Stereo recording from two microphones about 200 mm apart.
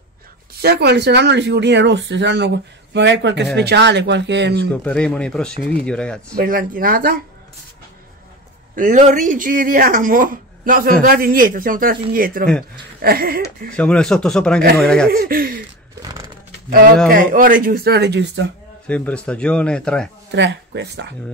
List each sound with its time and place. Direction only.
0.6 s speech: 55° right (ahead or behind)
4.8 s speech: 5° left (ahead or behind)
6.3 s speech: 45° right (ahead or behind)
8.7 s speech: 40° right (ahead or behind)
13.7 s speech: 5° left (ahead or behind)
15.0 s speech: 45° right (ahead or behind)
16.0 s a sound: 20° right (ahead or behind)
17.1 s speech: 45° right (ahead or behind)
18.9 s speech: 5° left (ahead or behind)
20.2 s speech: 60° right (ahead or behind)